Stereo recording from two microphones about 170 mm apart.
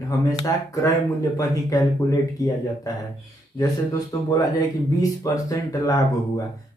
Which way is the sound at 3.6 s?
20° left (ahead or behind).